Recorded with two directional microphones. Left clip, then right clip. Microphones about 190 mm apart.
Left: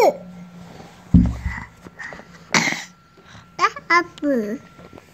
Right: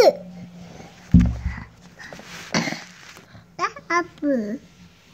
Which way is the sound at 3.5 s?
30° right (ahead or behind).